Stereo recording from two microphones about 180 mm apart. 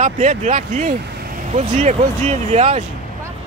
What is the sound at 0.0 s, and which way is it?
Speech, 45° right (ahead or behind).